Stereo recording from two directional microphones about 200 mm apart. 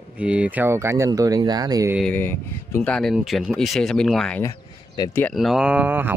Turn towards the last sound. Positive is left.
turn(degrees=-10)  # may be behind; listen again after turning